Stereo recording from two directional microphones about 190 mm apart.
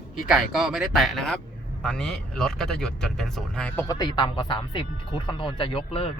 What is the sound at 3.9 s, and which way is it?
Speech, 20° left (ahead or behind).